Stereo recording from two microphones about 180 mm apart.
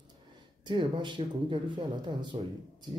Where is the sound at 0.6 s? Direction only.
25° right (ahead or behind).